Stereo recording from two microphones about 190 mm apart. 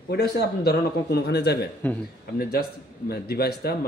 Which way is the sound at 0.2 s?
55° left (ahead or behind).